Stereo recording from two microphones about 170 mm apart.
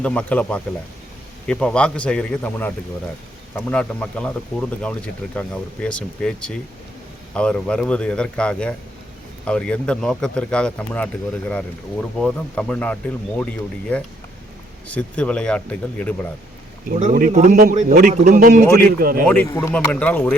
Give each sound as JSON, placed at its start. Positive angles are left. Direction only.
{"t": 0.0, "sound": "speech", "side_deg": 5}
{"t": 17.0, "sound": "a man's voice", "side_deg": -50}
{"t": 18.3, "sound": "speech", "side_deg": -60}
{"t": 19.5, "sound": "speech", "side_deg": 15}